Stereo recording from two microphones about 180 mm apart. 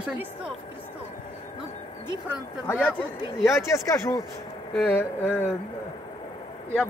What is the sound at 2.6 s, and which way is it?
Speech, 10° left (ahead or behind).